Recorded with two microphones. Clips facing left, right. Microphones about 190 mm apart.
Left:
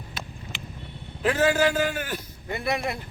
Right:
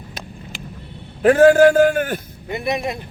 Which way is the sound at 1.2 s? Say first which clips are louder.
Right 11 dB; 55° right (ahead or behind).